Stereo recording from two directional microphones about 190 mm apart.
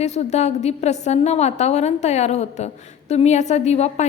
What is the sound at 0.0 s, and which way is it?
A woman's voice, 35° left (ahead or behind).